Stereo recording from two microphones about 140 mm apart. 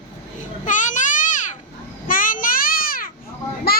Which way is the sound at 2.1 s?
75° left (ahead or behind).